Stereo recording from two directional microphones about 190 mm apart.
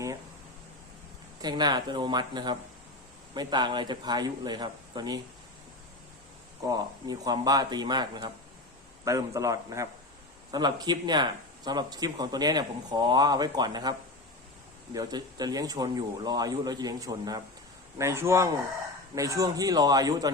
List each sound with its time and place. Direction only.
1.4 s speech: 20° right (ahead or behind)
6.7 s a man's voice: 20° right (ahead or behind)
14.9 s a man's voice: 20° right (ahead or behind)